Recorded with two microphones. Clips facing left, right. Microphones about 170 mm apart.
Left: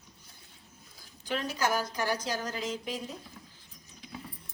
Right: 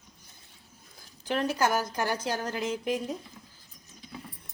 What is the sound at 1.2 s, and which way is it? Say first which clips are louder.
A woman's voice: right 4 dB; 55° right (ahead or behind).